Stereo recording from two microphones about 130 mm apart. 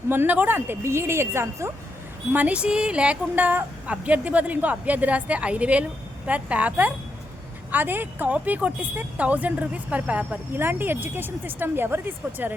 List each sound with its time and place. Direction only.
0.1 s a woman's voice: 15° right (ahead or behind)